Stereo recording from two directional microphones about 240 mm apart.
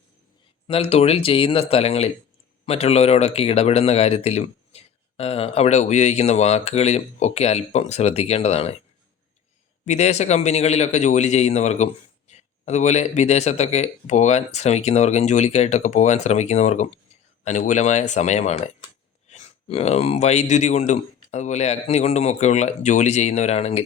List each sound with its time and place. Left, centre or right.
0.7 s a man's voice: left
9.8 s a man's voice: left